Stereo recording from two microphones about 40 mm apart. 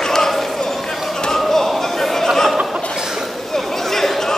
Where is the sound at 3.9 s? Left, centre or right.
Centre.